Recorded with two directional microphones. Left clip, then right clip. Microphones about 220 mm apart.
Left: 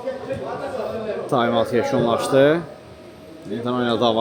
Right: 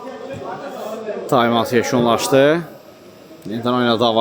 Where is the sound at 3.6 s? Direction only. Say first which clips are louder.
Right 4 dB; 40° right (ahead or behind).